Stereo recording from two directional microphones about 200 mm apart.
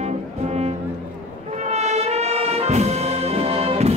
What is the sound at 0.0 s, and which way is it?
Music, 30° right (ahead or behind).